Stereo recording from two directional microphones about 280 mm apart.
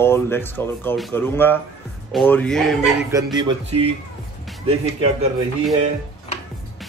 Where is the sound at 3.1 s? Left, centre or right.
Centre.